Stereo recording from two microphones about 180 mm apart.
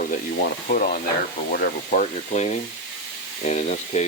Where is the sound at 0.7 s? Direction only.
50° left (ahead or behind).